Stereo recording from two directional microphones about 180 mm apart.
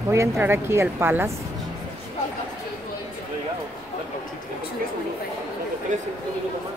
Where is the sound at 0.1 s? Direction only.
15° right (ahead or behind).